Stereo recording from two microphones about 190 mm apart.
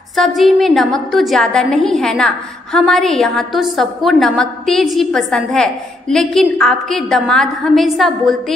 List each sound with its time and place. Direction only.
0.1 s a woman's voice: centre (ahead or behind)